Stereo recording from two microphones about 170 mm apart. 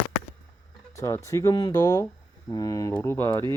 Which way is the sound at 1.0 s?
15° left (ahead or behind).